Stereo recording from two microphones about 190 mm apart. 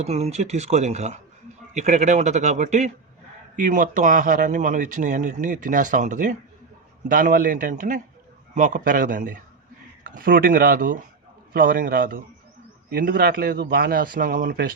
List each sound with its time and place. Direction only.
0.0 s a man's voice: 35° right (ahead or behind); by 14.8 s 50° right (ahead or behind)